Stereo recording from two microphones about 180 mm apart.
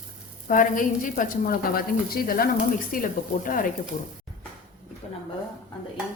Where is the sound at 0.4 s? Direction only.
45° left (ahead or behind).